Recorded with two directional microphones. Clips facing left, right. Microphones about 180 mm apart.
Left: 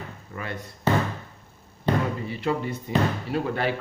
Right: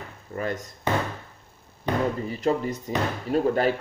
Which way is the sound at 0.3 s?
40° right (ahead or behind).